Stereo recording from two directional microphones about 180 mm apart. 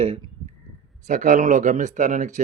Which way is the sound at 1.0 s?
45° right (ahead or behind).